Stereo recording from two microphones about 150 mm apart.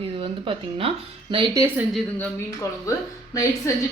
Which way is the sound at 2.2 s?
20° left (ahead or behind).